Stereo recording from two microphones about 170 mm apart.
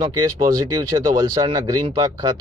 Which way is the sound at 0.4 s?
20° right (ahead or behind).